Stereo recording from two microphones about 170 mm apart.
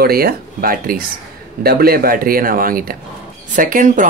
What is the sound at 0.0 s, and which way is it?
Speech, 60° right (ahead or behind).